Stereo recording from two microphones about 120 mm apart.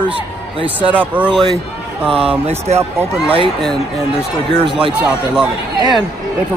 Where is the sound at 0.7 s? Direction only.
15° right (ahead or behind).